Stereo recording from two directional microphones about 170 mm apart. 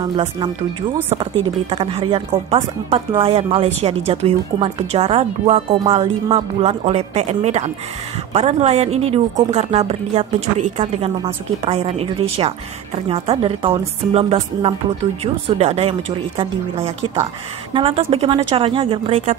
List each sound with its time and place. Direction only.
0.0 s speech: 30° right (ahead or behind)